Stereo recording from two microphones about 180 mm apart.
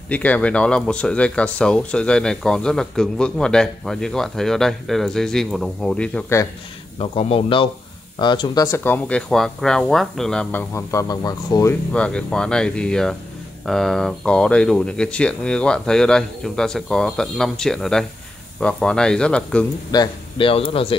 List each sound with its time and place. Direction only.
0.1 s speech: 10° left (ahead or behind)
7.0 s speech: 30° left (ahead or behind)
11.9 s speech: 5° left (ahead or behind)
19.9 s speech: 25° left (ahead or behind)